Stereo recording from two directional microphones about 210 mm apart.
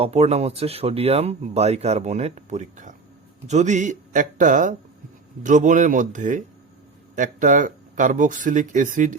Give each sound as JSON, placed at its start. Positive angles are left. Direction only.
{"t": 0.0, "sound": "speech", "side_deg": -30}